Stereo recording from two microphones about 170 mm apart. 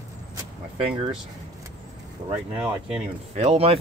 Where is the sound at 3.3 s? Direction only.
40° right (ahead or behind).